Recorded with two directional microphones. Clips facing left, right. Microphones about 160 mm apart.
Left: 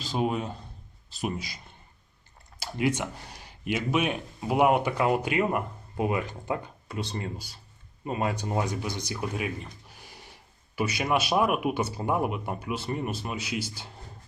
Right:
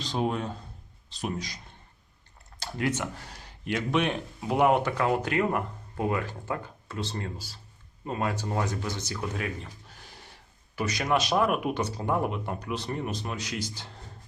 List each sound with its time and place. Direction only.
0.0 s a man's voice: 5° left (ahead or behind)
2.6 s speech: 10° left (ahead or behind)
10.8 s speech: 10° left (ahead or behind)